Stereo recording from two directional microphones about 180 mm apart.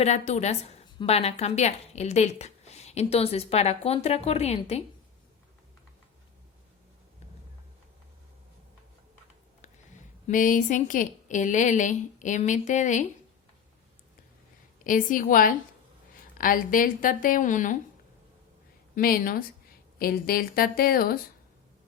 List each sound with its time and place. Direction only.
0.0 s a woman's voice: 35° left (ahead or behind)
10.2 s a woman's voice: 45° left (ahead or behind)
14.8 s a woman's voice: 50° left (ahead or behind)
18.9 s a woman's voice: 50° left (ahead or behind)